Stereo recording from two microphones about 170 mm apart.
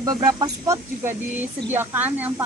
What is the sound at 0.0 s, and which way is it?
Speech, 20° right (ahead or behind).